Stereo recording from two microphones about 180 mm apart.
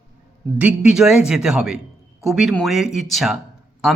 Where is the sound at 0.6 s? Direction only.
5° right (ahead or behind).